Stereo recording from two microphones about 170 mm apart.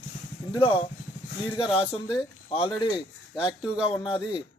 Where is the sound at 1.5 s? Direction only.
30° left (ahead or behind).